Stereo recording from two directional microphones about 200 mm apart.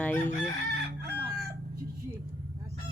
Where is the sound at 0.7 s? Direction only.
55° right (ahead or behind).